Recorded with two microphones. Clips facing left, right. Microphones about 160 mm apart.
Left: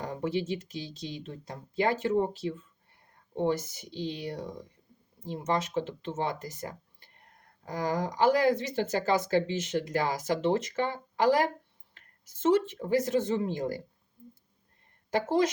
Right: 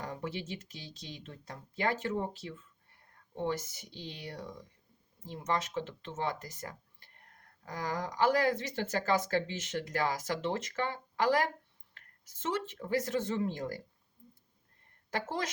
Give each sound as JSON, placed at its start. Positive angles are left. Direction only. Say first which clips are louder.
{"t": 0.0, "sound": "speech", "louder": "left 8 dB", "side_deg": 25}
{"t": 5.5, "sound": "speech", "louder": "left 4 dB", "side_deg": 20}
{"t": 15.1, "sound": "speech", "louder": "left 10 dB", "side_deg": 20}